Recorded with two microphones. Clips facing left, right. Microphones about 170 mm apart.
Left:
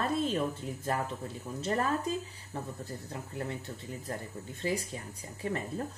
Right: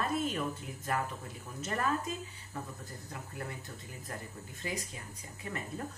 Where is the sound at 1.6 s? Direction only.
30° left (ahead or behind).